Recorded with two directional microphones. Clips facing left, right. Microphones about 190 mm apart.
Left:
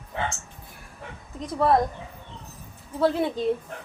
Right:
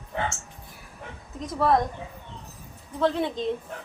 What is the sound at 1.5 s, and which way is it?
Speech, 5° left (ahead or behind).